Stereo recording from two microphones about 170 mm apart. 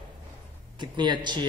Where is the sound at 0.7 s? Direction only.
25° right (ahead or behind).